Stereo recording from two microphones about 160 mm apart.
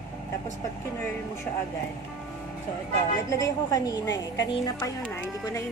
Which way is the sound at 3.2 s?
20° left (ahead or behind).